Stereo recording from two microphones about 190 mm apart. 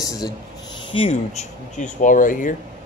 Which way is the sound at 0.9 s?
35° left (ahead or behind).